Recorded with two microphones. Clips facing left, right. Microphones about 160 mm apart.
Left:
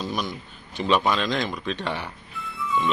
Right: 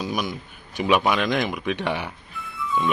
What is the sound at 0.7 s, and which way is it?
Speech, 10° right (ahead or behind).